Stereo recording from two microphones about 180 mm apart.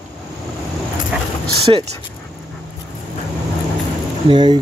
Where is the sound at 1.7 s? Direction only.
30° right (ahead or behind).